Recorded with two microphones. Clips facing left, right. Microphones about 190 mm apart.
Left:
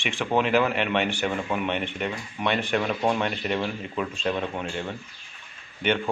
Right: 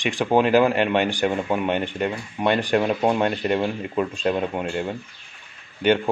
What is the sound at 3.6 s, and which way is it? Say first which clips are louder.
Speech: right 5 dB; 30° right (ahead or behind).